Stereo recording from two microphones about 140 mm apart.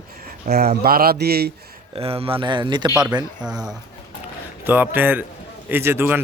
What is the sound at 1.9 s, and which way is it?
Speech, 45° right (ahead or behind).